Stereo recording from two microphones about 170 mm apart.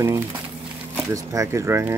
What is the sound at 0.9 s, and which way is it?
Speech, 20° right (ahead or behind).